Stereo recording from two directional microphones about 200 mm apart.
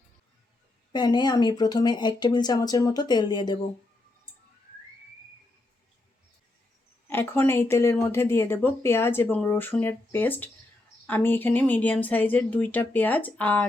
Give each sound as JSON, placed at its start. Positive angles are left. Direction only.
{"t": 0.9, "sound": "speech", "side_deg": 20}
{"t": 7.1, "sound": "speech", "side_deg": 10}